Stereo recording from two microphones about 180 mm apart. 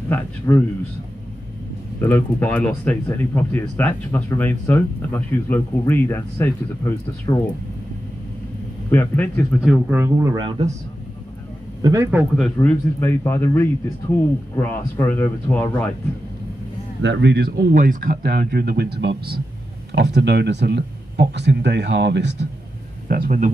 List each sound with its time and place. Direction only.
0.1 s speech: 10° left (ahead or behind)
2.0 s speech: 10° left (ahead or behind)
8.9 s speech: 10° left (ahead or behind)
9.8 s speech: 15° right (ahead or behind)
11.8 s speech: 15° right (ahead or behind)
12.4 s speech: 10° left (ahead or behind)
17.0 s speech: 75° right (ahead or behind)
23.0 s speech: 55° right (ahead or behind)